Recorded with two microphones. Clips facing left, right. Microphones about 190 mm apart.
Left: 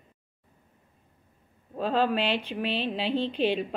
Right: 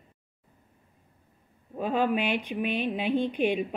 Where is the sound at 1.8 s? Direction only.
15° right (ahead or behind).